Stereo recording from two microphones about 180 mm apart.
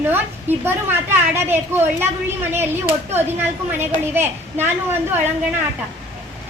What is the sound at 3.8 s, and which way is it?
Speech, 10° right (ahead or behind).